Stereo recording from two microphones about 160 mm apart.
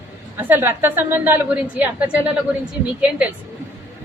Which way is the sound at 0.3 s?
10° right (ahead or behind).